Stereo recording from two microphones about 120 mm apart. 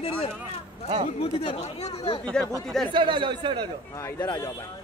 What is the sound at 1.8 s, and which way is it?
Speech, 55° left (ahead or behind).